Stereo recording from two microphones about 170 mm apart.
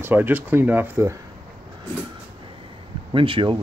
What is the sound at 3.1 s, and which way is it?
Speech, 30° right (ahead or behind).